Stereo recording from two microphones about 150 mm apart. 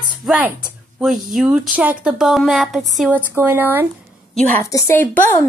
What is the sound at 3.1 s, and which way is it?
Speech, 15° right (ahead or behind).